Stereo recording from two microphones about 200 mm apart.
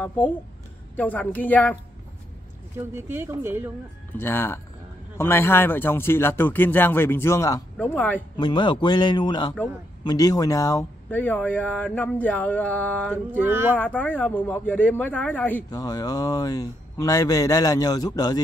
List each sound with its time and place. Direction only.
0.9 s speech: 10° left (ahead or behind)
3.1 s speech: 10° right (ahead or behind)
4.2 s speech: 10° left (ahead or behind)
8.4 s speech: 25° left (ahead or behind); by 13.4 s 5° left (ahead or behind)
13.4 s speech: 10° right (ahead or behind)
13.7 s speech: 10° left (ahead or behind)